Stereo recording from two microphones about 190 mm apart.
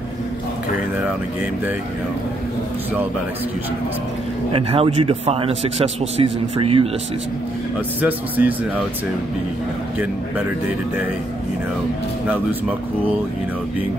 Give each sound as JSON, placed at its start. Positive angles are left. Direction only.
{"t": 4.5, "sound": "a man's voice", "side_deg": -30}
{"t": 8.0, "sound": "speech", "side_deg": -10}